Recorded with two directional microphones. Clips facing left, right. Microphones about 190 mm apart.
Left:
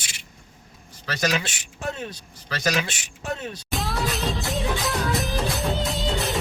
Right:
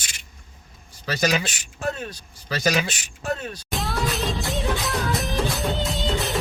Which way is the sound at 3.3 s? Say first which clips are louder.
Even; 20° left (ahead or behind).